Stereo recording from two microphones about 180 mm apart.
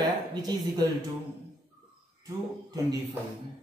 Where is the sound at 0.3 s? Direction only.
20° right (ahead or behind).